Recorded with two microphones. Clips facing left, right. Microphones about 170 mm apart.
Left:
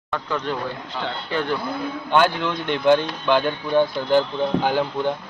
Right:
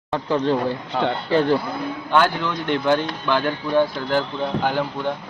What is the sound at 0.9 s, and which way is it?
Speech, 60° right (ahead or behind).